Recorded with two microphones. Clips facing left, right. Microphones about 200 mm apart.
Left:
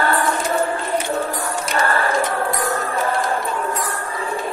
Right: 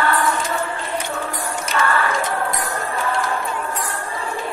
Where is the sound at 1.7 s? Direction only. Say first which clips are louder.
Even; 35° left (ahead or behind).